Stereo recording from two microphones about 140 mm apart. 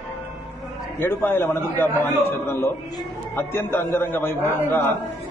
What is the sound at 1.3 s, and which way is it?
A man's voice, 15° left (ahead or behind).